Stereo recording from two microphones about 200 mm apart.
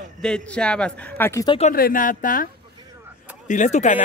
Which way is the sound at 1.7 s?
45° left (ahead or behind).